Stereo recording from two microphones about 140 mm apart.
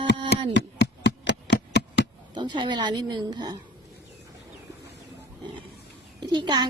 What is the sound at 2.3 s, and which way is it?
Speech, 30° right (ahead or behind).